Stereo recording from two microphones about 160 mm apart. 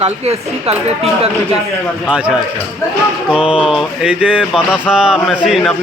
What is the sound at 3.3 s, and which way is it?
A man's voice, 5° right (ahead or behind).